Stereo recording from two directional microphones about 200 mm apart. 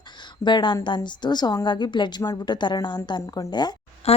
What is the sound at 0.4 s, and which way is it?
A woman's voice, 25° left (ahead or behind).